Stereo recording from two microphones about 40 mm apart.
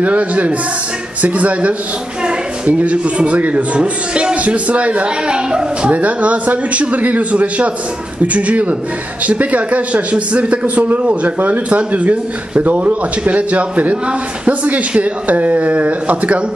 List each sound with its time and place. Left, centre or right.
0.0 s speech: right
2.8 s speech: right